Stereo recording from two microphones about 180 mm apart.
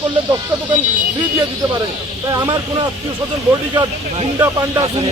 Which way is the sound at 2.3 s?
20° right (ahead or behind).